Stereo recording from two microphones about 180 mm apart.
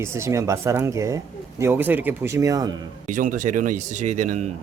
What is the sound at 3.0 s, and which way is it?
A man's voice, 45° right (ahead or behind).